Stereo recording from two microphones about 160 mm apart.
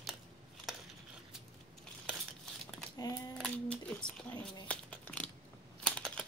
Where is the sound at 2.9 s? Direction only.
25° left (ahead or behind).